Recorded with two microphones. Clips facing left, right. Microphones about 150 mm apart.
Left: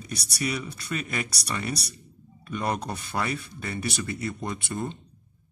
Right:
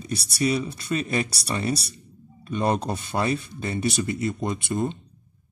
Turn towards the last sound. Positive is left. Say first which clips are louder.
# right 5 dB
turn(degrees=-20)  # may be behind; listen again after turning